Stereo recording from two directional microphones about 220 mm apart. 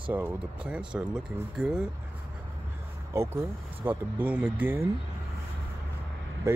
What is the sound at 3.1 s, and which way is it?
Speech, 10° right (ahead or behind).